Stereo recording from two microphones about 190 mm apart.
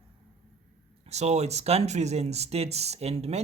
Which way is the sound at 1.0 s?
35° right (ahead or behind).